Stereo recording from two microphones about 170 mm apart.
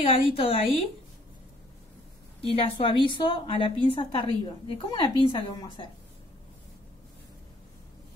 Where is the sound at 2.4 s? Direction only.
35° left (ahead or behind).